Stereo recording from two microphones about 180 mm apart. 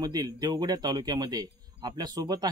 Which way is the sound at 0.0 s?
20° right (ahead or behind).